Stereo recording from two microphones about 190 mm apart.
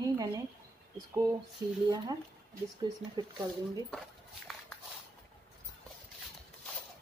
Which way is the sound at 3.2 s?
20° right (ahead or behind).